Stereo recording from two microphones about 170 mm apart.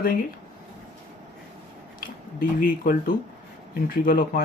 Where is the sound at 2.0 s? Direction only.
55° left (ahead or behind).